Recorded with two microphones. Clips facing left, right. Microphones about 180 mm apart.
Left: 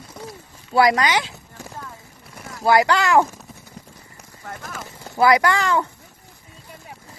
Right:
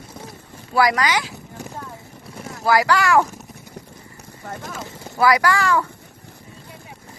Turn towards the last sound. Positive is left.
turn(degrees=20)  # may be behind; listen again after turning